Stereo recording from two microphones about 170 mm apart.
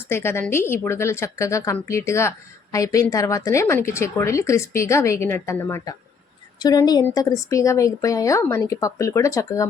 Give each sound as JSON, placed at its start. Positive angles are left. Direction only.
{"t": 0.1, "sound": "a woman's voice", "side_deg": 15}